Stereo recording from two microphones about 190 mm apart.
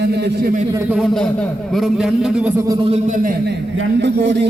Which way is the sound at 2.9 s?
45° right (ahead or behind).